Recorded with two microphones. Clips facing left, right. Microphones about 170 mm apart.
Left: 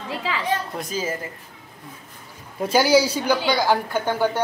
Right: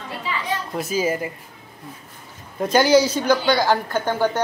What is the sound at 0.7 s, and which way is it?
Speech, 10° right (ahead or behind).